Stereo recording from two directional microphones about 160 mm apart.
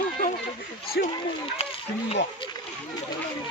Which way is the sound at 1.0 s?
90° left.